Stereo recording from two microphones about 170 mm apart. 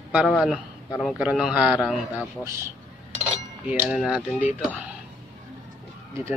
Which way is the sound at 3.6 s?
10° right (ahead or behind).